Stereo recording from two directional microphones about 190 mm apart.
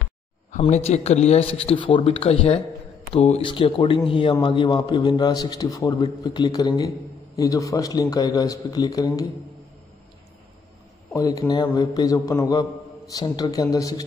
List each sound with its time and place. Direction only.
0.5 s a man's voice: 40° left (ahead or behind); by 9.2 s 20° left (ahead or behind)
11.1 s a man's voice: 20° left (ahead or behind)